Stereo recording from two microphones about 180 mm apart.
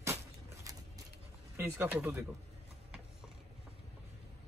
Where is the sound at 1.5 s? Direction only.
10° right (ahead or behind).